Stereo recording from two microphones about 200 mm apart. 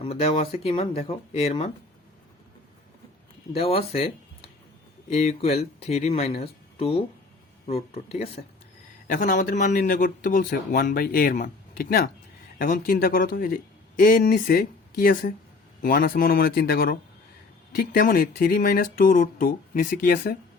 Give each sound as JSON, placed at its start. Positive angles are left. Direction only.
{"t": 0.0, "sound": "speech", "side_deg": 30}
{"t": 3.5, "sound": "speech", "side_deg": 30}
{"t": 9.0, "sound": "speech", "side_deg": 40}